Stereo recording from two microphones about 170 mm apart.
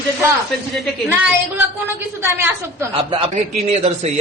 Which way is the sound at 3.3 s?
40° right (ahead or behind).